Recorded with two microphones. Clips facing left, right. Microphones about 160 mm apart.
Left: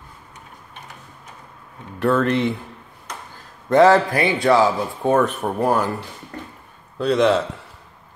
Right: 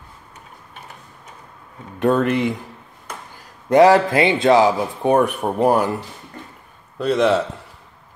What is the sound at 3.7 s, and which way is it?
A man's voice, 15° right (ahead or behind).